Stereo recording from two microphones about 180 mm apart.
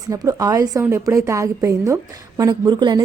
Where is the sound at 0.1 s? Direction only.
20° right (ahead or behind).